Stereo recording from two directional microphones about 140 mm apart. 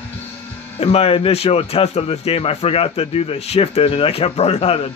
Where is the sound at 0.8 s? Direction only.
45° left (ahead or behind).